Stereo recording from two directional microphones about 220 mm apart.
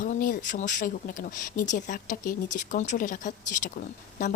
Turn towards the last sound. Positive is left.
turn(degrees=35)  # may be behind; listen again after turning